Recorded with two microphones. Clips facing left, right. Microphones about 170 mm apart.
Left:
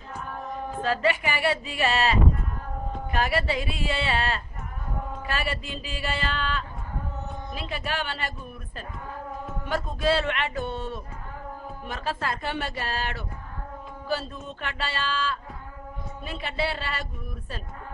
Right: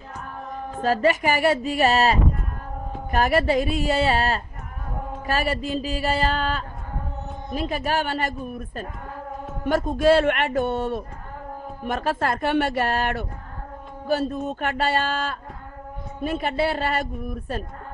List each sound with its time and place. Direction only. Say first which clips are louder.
0.8 s speech: right 6 dB; 40° right (ahead or behind)